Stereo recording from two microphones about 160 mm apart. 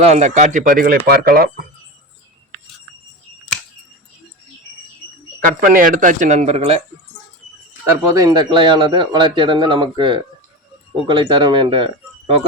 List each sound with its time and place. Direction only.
0.0 s speech: 45° right (ahead or behind); by 1.6 s 70° right (ahead or behind)
5.5 s speech: 60° right (ahead or behind); by 6.8 s 40° right (ahead or behind)
7.9 s speech: 20° right (ahead or behind)